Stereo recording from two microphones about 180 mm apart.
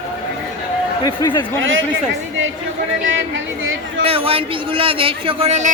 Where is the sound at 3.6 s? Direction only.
90° right.